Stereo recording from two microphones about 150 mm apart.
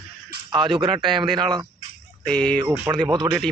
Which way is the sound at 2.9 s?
10° right (ahead or behind).